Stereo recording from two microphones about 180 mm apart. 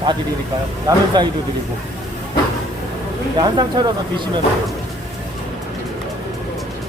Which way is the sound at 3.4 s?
25° right (ahead or behind).